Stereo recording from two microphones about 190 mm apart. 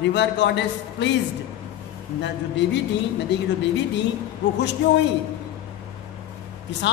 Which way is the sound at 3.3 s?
65° left (ahead or behind).